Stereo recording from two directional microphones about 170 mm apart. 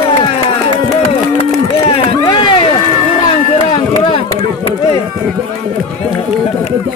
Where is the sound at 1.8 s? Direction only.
30° left (ahead or behind).